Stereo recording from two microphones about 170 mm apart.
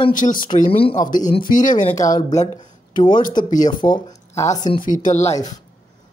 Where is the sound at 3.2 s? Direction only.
50° left (ahead or behind).